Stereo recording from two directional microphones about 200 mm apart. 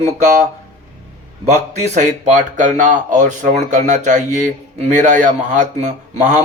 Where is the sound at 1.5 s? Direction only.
35° right (ahead or behind).